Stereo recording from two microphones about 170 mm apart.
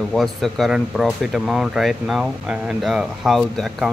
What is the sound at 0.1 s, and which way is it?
Speech, centre (ahead or behind).